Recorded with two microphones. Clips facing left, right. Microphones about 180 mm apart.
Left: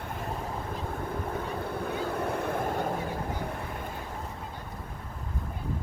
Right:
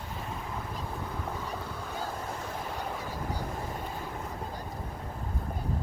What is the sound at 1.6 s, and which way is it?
Vehicle, 60° left (ahead or behind).